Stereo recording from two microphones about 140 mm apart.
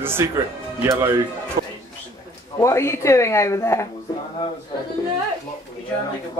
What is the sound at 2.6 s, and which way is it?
Speech, 20° left (ahead or behind).